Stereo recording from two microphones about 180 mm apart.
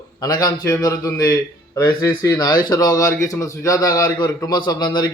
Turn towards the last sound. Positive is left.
turn(degrees=25)  # may be behind; listen again after turning